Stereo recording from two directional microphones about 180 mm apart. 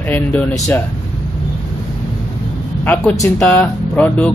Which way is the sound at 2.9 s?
10° left (ahead or behind).